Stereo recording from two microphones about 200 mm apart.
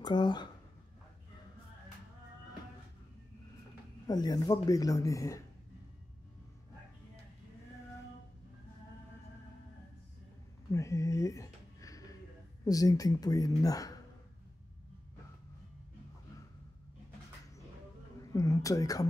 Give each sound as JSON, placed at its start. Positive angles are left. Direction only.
{"t": 0.0, "sound": "speech", "side_deg": 20}
{"t": 4.1, "sound": "speech", "side_deg": 20}
{"t": 10.7, "sound": "a sound", "side_deg": 15}
{"t": 12.6, "sound": "speech", "side_deg": 15}
{"t": 18.3, "sound": "speech", "side_deg": 15}